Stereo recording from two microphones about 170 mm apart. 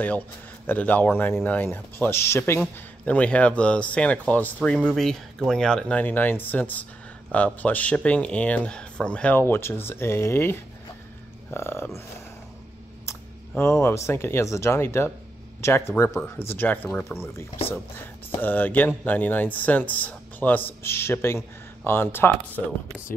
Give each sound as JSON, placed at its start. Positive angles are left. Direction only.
{"t": 0.7, "sound": "speech", "side_deg": 10}
{"t": 13.0, "sound": "speech", "side_deg": 15}